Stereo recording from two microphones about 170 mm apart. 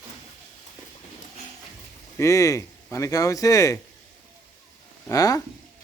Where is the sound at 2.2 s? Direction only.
20° left (ahead or behind).